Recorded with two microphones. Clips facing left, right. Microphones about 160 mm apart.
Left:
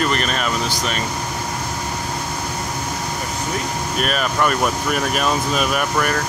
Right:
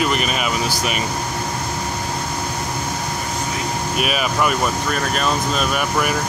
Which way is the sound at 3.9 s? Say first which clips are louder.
Even; 5° right (ahead or behind).